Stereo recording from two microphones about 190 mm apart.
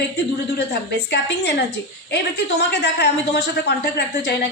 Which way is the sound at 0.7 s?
60° left (ahead or behind).